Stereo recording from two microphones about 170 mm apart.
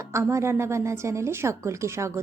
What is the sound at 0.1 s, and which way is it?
A woman's voice, 15° right (ahead or behind).